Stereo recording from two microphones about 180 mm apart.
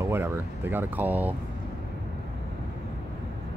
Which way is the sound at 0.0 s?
15° right (ahead or behind).